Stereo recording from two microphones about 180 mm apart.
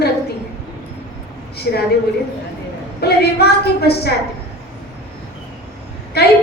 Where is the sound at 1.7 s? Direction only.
65° left (ahead or behind).